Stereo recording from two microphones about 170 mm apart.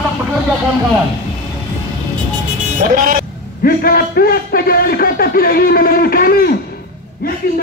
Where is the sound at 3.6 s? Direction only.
65° left (ahead or behind).